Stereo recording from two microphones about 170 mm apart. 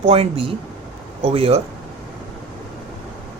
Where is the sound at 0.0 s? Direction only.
35° right (ahead or behind).